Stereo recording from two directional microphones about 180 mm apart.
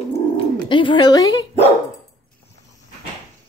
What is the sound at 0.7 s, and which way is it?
Speech, 25° left (ahead or behind).